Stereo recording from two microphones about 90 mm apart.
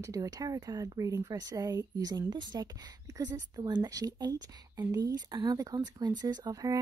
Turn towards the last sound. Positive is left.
turn(degrees=-40)  # may be behind; listen again after turning